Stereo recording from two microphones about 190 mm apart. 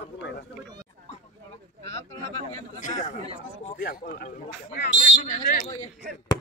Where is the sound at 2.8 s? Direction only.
40° left (ahead or behind).